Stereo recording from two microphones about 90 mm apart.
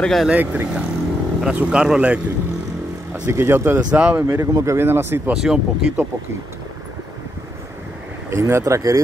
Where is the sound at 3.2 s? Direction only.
25° right (ahead or behind).